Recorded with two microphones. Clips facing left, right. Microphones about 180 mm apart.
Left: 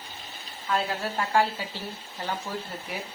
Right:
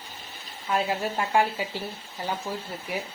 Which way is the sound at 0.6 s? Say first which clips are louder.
Right 2 dB; 15° right (ahead or behind).